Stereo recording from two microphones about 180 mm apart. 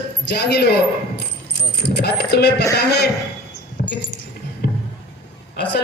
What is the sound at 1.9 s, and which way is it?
Speech, 65° left (ahead or behind).